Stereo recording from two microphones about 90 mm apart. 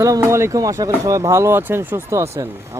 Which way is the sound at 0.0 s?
35° right (ahead or behind).